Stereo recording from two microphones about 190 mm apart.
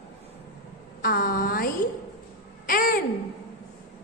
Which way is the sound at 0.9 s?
50° left (ahead or behind).